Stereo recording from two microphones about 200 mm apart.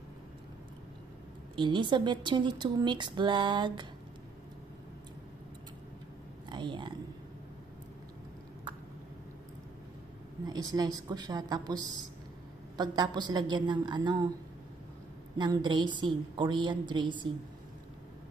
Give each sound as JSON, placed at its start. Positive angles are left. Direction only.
{"t": 1.6, "sound": "speech", "side_deg": -25}
{"t": 6.5, "sound": "a sound", "side_deg": -25}
{"t": 10.4, "sound": "speech", "side_deg": -20}
{"t": 15.3, "sound": "speech", "side_deg": -20}